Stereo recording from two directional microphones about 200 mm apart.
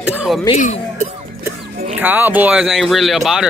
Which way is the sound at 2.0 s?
10° right (ahead or behind).